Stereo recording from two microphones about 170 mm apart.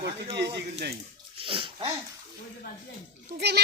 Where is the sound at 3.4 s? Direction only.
75° right (ahead or behind).